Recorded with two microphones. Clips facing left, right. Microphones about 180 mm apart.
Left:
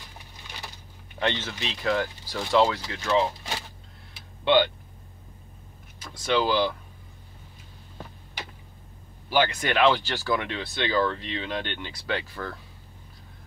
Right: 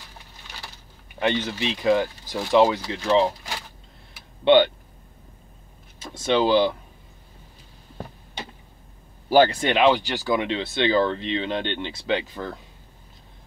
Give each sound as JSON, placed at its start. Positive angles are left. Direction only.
{"t": 1.2, "sound": "speech", "side_deg": -15}
{"t": 5.9, "sound": "speech", "side_deg": -25}
{"t": 9.3, "sound": "speech", "side_deg": -40}
{"t": 9.6, "sound": "speech", "side_deg": -20}